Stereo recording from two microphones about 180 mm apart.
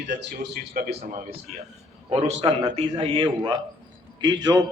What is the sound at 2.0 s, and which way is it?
A man's voice, 30° right (ahead or behind).